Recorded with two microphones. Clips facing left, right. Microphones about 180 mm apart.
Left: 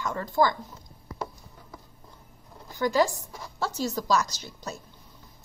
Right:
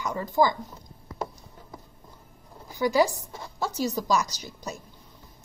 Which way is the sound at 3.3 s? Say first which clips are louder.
Right 1 dB; 25° right (ahead or behind).